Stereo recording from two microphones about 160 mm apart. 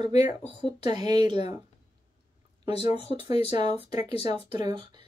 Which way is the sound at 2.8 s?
40° left (ahead or behind).